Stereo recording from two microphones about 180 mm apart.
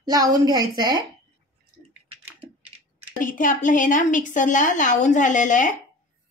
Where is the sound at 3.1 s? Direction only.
50° left (ahead or behind).